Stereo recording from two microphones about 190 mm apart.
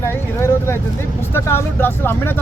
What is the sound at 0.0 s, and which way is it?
Speech, 15° left (ahead or behind).